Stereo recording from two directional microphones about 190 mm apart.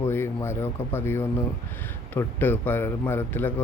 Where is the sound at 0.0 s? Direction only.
15° left (ahead or behind).